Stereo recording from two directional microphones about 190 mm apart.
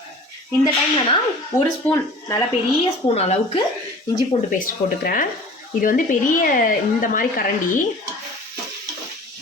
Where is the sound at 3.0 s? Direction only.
35° left (ahead or behind).